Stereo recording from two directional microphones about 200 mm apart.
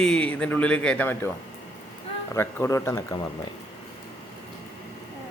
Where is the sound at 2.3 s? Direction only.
15° left (ahead or behind).